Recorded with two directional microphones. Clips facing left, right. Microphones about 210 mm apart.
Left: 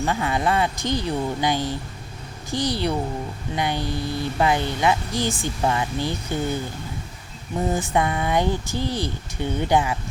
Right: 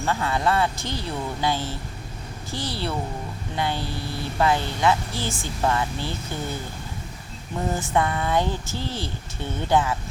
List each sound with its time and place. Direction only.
0.0 s speech: 15° left (ahead or behind)
7.7 s speech: 15° left (ahead or behind)